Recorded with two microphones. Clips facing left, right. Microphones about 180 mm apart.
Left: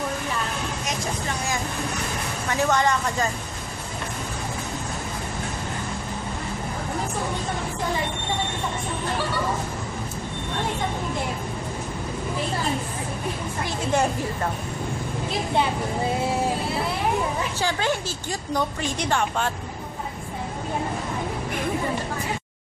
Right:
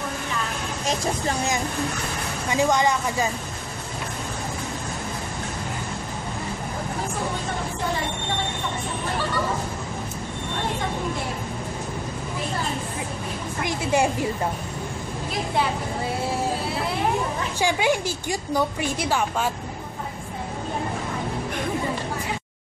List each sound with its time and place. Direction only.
2.5 s a woman's voice: 10° right (ahead or behind)
13.7 s a woman's voice: 10° right (ahead or behind)
17.6 s a woman's voice: 10° right (ahead or behind)